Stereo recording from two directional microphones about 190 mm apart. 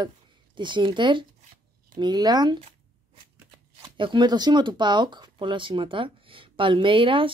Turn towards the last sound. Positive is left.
turn(degrees=-25)  # may be behind; listen again after turning